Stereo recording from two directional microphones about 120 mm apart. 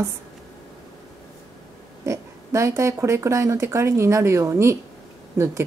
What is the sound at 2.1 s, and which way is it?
Speech, 25° right (ahead or behind).